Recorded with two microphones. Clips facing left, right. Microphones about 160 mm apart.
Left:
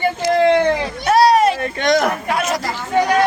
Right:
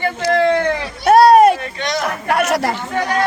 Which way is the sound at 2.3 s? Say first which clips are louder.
Right 4 dB; 70° right (ahead or behind).